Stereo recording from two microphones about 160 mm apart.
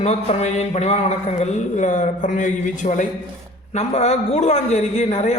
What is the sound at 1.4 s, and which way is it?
A man's voice, 45° left (ahead or behind).